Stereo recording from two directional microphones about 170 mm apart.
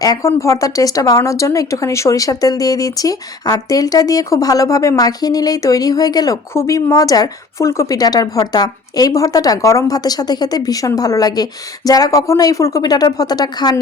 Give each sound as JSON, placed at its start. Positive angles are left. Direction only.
{"t": 0.0, "sound": "speech", "side_deg": 20}